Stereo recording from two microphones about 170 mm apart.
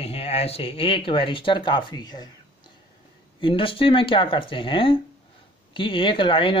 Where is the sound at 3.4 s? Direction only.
30° left (ahead or behind).